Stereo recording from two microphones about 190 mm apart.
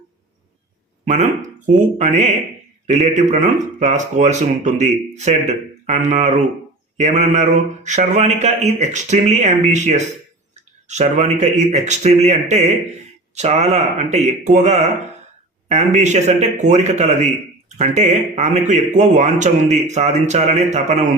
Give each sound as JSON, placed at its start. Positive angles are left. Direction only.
{"t": 1.0, "sound": "speech", "side_deg": -40}